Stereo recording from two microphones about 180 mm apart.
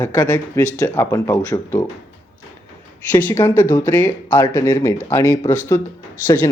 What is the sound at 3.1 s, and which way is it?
Speech, 10° left (ahead or behind).